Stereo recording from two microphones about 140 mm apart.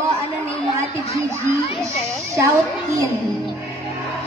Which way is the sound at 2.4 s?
20° right (ahead or behind).